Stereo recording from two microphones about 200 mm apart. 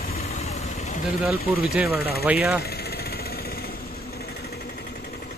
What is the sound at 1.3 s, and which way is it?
Speech, 50° left (ahead or behind).